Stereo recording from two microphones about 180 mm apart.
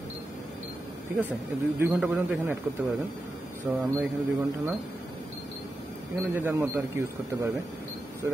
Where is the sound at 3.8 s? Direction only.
5° right (ahead or behind).